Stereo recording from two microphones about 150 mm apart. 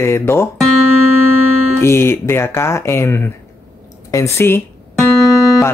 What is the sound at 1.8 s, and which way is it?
Speech, 15° left (ahead or behind).